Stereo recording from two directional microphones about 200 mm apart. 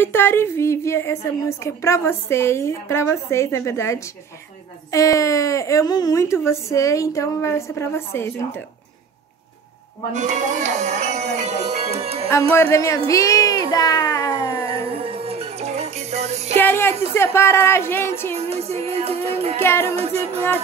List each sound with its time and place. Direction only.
0.0 s a woman's voice: 10° left (ahead or behind)
10.1 s speech: 40° right (ahead or behind)
12.7 s a woman's voice: 15° left (ahead or behind)
13.7 s a sound: 20° left (ahead or behind)
14.7 s music: 30° right (ahead or behind)
16.5 s a woman's voice: 10° left (ahead or behind)
18.3 s music: 30° right (ahead or behind)
19.6 s a woman's voice: 10° left (ahead or behind)
20.0 s music: 30° right (ahead or behind)